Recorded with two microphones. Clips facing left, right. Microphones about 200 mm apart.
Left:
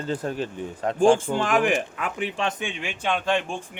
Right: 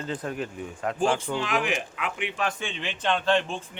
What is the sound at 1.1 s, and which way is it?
Speech, 50° left (ahead or behind).